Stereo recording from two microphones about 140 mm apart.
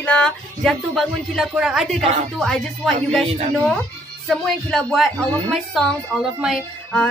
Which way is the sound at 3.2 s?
50° right (ahead or behind).